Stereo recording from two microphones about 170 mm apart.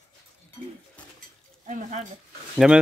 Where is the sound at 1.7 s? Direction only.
45° right (ahead or behind).